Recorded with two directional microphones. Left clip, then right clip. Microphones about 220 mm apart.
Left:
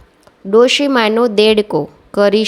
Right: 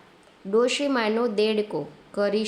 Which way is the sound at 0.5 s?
35° left (ahead or behind).